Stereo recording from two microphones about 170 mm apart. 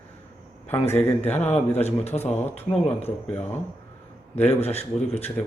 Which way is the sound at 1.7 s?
40° left (ahead or behind).